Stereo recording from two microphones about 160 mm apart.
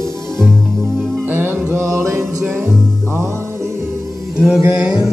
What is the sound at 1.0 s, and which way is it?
Music, 5° left (ahead or behind).